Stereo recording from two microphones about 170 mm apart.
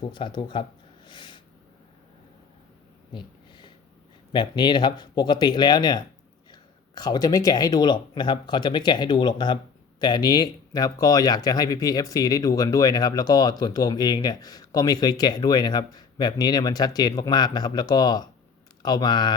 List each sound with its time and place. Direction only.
0.0 s speech: 30° left (ahead or behind)
1.0 s snort: 30° left (ahead or behind)
3.1 s a sound: 25° left (ahead or behind)
4.3 s speech: 25° left (ahead or behind)